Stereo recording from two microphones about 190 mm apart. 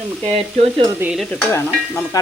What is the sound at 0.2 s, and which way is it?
Frying, 30° right (ahead or behind).